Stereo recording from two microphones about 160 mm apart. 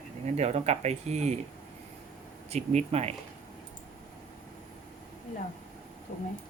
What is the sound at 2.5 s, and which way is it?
Speech, 40° right (ahead or behind).